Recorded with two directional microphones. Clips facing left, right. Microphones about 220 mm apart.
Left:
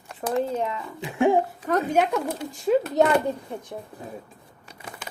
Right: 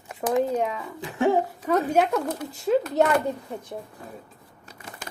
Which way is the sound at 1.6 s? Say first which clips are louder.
Right 2 dB; 10° right (ahead or behind).